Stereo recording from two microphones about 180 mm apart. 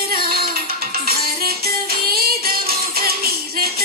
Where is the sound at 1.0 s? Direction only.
55° right (ahead or behind).